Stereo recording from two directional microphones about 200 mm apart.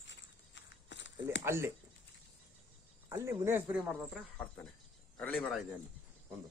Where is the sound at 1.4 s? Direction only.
10° right (ahead or behind).